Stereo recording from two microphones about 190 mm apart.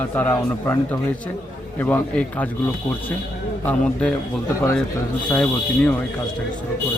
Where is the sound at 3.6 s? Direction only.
5° left (ahead or behind).